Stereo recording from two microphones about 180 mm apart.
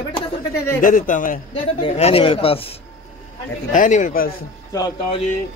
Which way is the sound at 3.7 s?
45° left (ahead or behind).